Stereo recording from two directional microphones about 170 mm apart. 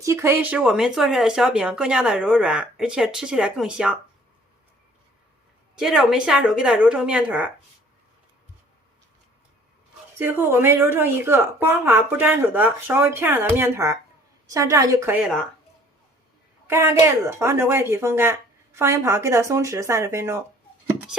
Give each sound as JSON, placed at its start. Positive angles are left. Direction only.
{"t": 0.0, "sound": "speech", "side_deg": -15}
{"t": 5.8, "sound": "speech", "side_deg": -5}
{"t": 10.2, "sound": "speech", "side_deg": -10}
{"t": 16.6, "sound": "speech", "side_deg": -15}